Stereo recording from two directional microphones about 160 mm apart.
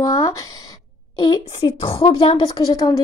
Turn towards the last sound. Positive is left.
turn(degrees=25)  # may be behind; listen again after turning